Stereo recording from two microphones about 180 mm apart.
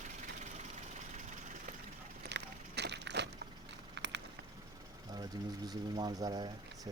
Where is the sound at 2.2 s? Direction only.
70° right (ahead or behind).